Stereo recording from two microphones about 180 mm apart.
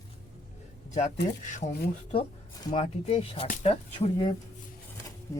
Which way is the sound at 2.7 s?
35° left (ahead or behind).